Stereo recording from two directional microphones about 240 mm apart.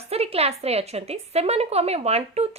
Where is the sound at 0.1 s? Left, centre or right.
Right.